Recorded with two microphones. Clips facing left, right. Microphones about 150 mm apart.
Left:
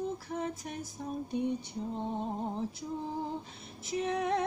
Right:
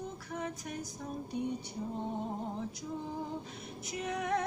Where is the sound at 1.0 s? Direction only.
30° left (ahead or behind).